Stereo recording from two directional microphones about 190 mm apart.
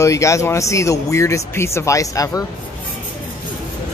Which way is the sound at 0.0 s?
15° left (ahead or behind).